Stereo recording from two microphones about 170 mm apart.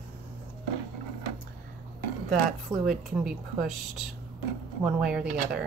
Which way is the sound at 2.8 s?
Centre (ahead or behind).